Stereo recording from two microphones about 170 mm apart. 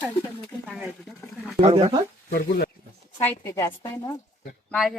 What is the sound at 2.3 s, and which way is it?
Speech, 60° left (ahead or behind).